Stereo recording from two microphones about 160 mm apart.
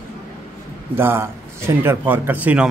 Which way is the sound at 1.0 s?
15° right (ahead or behind).